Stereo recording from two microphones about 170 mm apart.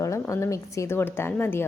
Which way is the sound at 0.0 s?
20° left (ahead or behind).